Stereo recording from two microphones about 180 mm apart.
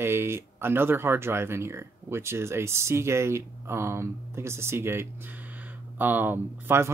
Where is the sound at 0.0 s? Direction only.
15° right (ahead or behind).